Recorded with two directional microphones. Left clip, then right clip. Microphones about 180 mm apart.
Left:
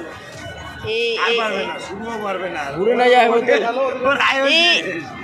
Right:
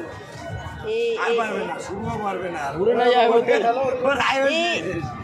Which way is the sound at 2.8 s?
40° left (ahead or behind).